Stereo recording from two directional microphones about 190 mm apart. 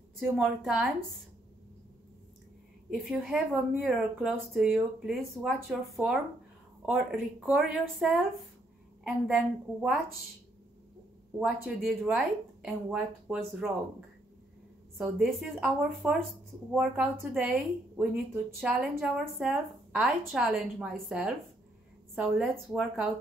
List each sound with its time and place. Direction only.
0.4 s speech: 5° right (ahead or behind)
2.9 s speech: centre (ahead or behind)
11.3 s speech: 5° right (ahead or behind)
15.1 s speech: 5° right (ahead or behind)